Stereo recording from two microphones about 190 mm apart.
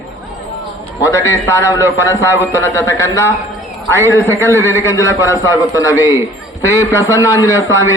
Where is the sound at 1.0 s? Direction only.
15° left (ahead or behind).